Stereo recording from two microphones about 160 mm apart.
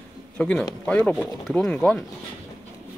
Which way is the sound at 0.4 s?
5° left (ahead or behind).